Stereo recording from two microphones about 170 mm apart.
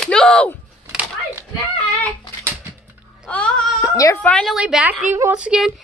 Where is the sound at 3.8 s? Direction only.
20° left (ahead or behind).